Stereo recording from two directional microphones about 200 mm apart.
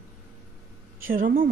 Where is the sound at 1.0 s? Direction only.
45° right (ahead or behind).